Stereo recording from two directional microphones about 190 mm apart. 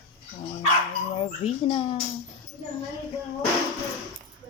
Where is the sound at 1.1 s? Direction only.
30° left (ahead or behind).